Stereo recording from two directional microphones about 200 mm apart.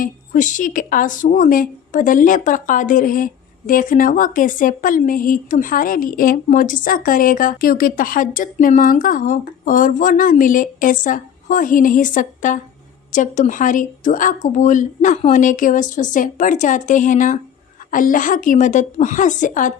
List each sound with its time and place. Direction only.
0.0 s a woman's voice: 40° left (ahead or behind)